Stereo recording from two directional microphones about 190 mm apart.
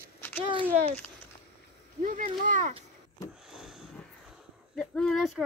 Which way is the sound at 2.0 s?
45° right (ahead or behind).